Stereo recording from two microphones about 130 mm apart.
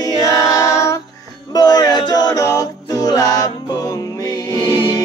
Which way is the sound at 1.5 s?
30° left (ahead or behind).